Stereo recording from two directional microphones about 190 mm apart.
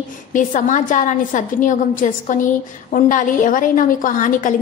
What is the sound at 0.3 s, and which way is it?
A woman's voice, 45° left (ahead or behind).